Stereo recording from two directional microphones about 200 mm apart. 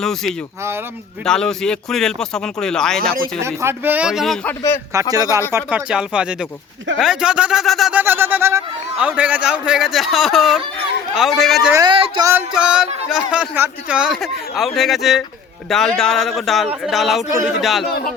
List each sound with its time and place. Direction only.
0.0 s speech: centre (ahead or behind)
3.4 s speech: 15° right (ahead or behind)
5.1 s speech: 20° right (ahead or behind); by 11.7 s centre (ahead or behind)
11.7 s speech: 20° right (ahead or behind)
12.3 s speech: 5° right (ahead or behind)